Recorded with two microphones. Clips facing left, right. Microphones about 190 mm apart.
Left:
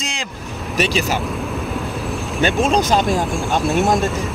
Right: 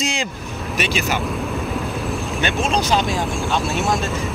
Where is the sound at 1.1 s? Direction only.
Centre (ahead or behind).